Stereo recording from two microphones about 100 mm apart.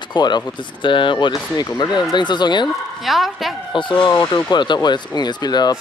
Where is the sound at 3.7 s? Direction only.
55° left (ahead or behind).